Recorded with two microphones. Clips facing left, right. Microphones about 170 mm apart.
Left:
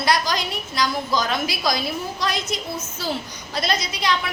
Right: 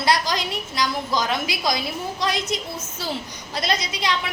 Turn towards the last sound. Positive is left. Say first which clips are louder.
# left 1 dB
turn(degrees=-20)  # may be behind; listen again after turning